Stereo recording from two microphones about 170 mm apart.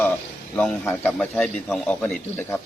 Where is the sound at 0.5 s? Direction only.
10° left (ahead or behind).